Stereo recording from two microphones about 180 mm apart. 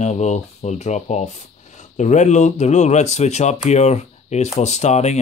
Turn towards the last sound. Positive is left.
turn(degrees=40)  # may be behind; listen again after turning